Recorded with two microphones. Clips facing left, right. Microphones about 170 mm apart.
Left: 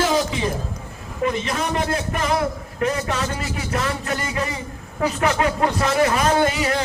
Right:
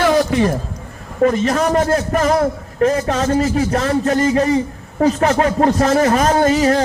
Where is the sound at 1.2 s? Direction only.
45° right (ahead or behind).